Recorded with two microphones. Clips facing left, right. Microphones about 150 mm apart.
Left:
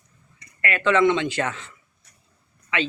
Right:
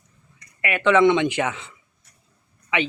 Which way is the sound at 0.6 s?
15° right (ahead or behind).